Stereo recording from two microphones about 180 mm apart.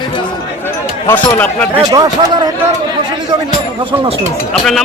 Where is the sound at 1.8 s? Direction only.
20° right (ahead or behind).